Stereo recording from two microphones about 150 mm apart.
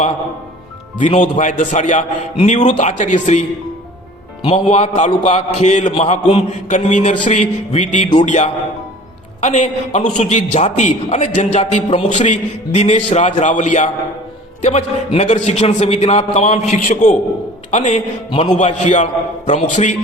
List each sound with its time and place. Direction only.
0.9 s a man's voice: 55° left (ahead or behind)
4.4 s a man's voice: 45° left (ahead or behind)
5.9 s a man's voice: 35° left (ahead or behind)
12.1 s a man's voice: 50° left (ahead or behind)
18.3 s a man's voice: 30° left (ahead or behind)
18.5 s a man's voice: 50° left (ahead or behind)